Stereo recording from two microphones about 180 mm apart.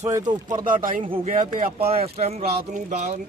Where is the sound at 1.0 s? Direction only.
30° right (ahead or behind).